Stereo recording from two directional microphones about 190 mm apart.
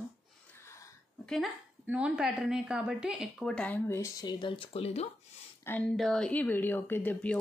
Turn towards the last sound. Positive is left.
turn(degrees=10)  # may be behind; listen again after turning